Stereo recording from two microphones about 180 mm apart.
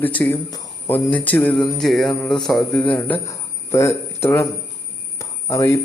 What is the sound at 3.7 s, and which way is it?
Speech, 15° left (ahead or behind).